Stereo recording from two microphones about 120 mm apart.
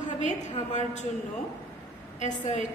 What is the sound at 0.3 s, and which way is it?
Speech, 80° left.